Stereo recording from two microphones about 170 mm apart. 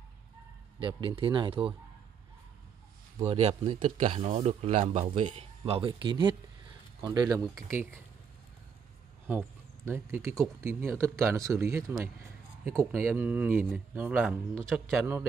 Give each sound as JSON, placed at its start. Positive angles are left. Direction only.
{"t": 0.7, "sound": "speech", "side_deg": -30}
{"t": 3.3, "sound": "speech", "side_deg": -35}
{"t": 9.3, "sound": "speech", "side_deg": -15}